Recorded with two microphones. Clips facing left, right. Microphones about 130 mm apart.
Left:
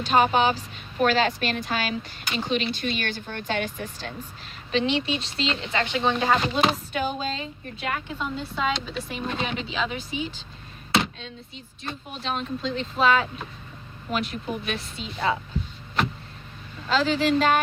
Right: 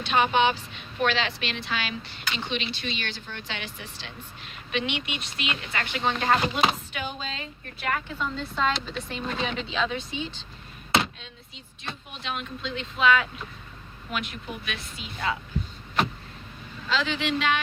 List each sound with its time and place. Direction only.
0.0 s a woman's voice: 40° left (ahead or behind)
4.7 s a woman's voice: 30° left (ahead or behind)
6.9 s speech: 45° left (ahead or behind)
7.3 s a woman's voice: 20° left (ahead or behind)
11.8 s speech: 35° left (ahead or behind)
16.9 s speech: 40° left (ahead or behind)